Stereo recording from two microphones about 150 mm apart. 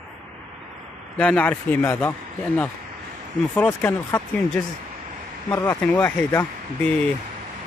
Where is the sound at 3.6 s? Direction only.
15° left (ahead or behind).